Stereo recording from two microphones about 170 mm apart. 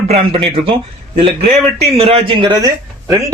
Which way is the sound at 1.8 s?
35° right (ahead or behind).